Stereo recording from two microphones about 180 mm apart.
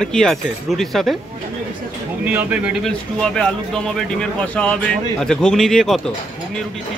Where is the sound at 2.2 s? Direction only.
10° right (ahead or behind).